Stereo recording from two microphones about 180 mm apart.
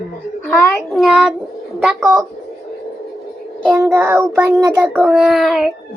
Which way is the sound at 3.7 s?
15° right (ahead or behind).